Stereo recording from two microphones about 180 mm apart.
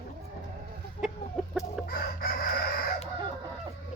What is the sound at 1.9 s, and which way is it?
Chicken, 60° left (ahead or behind).